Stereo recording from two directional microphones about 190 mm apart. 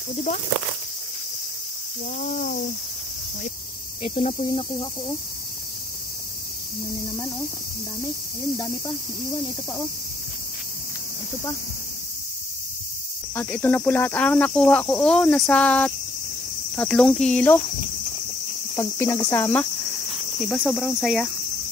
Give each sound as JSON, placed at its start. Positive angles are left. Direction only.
{"t": 2.1, "sound": "speech", "side_deg": 45}
{"t": 4.0, "sound": "cricket", "side_deg": 35}
{"t": 8.5, "sound": "cricket", "side_deg": 20}
{"t": 13.3, "sound": "speech", "side_deg": 10}
{"t": 16.7, "sound": "cricket", "side_deg": 5}
{"t": 18.8, "sound": "speech", "side_deg": 15}
{"t": 20.3, "sound": "cricket", "side_deg": 0}